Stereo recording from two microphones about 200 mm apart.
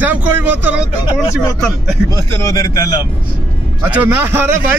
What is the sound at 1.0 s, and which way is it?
Speech, 15° left (ahead or behind).